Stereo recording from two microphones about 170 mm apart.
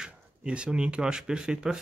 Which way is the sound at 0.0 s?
5° right (ahead or behind).